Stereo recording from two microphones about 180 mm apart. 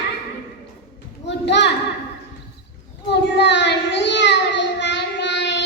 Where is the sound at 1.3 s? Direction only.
75° left (ahead or behind).